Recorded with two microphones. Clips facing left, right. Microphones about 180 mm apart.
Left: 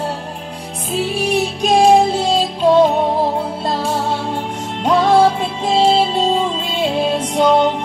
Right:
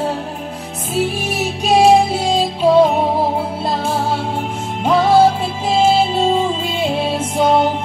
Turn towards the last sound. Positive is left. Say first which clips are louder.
# left 1 dB
turn(degrees=-5)  # may be behind; listen again after turning